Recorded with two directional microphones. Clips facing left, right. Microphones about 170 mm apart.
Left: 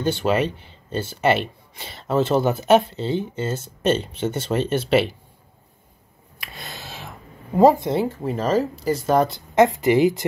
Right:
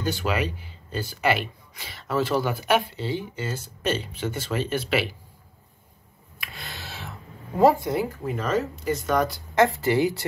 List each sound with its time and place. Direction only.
0.0 s speech: 25° left (ahead or behind)
6.4 s speech: 20° left (ahead or behind)